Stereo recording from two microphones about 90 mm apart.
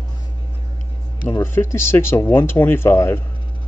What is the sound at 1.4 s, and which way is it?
Speech, 25° left (ahead or behind).